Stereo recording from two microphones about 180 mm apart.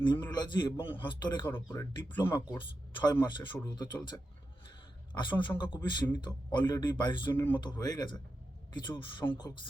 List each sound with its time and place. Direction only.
0.2 s speech: 20° left (ahead or behind)
2.0 s speech: 25° left (ahead or behind)
5.1 s speech: 25° left (ahead or behind)